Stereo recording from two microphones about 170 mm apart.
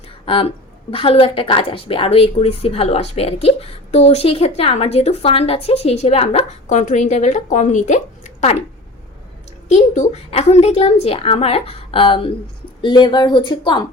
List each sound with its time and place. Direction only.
0.3 s a woman's voice: 30° left (ahead or behind)
9.6 s a woman's voice: 45° left (ahead or behind); by 13.8 s 25° left (ahead or behind)